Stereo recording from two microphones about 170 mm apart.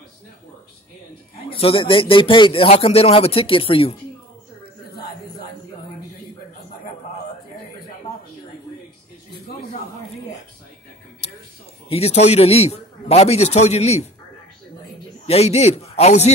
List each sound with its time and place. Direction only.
1.5 s speech: 35° left (ahead or behind)
11.9 s speech: 40° left (ahead or behind)
15.2 s speech: 35° left (ahead or behind)